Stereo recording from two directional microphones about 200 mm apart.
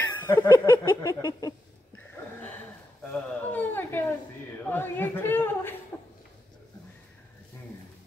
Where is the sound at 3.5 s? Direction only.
10° left (ahead or behind).